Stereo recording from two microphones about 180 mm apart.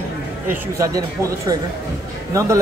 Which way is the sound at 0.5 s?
20° right (ahead or behind).